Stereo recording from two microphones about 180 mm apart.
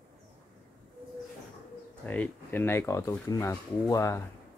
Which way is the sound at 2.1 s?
10° left (ahead or behind).